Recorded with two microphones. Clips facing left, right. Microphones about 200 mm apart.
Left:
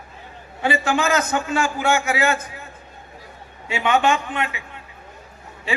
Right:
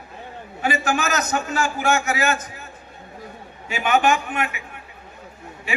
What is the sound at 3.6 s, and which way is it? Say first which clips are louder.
Speech: even; 25° left (ahead or behind).